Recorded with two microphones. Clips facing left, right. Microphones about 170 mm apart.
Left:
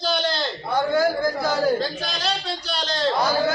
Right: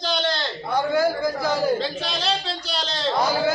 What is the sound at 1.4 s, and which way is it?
A man's voice, centre (ahead or behind).